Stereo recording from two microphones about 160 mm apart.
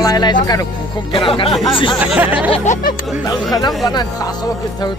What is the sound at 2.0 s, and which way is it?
Speech, 10° right (ahead or behind).